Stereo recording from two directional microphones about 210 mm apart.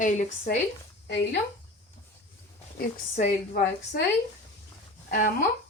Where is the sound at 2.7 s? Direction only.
40° left (ahead or behind).